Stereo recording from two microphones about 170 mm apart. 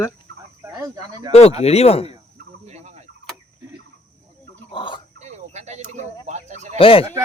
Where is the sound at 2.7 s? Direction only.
40° right (ahead or behind).